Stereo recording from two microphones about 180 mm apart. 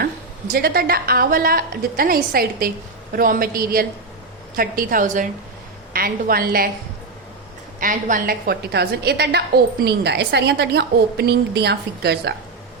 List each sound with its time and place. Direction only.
0.0 s a woman's voice: 60° right (ahead or behind)
7.8 s a woman's voice: 50° right (ahead or behind); by 12.3 s 65° right (ahead or behind)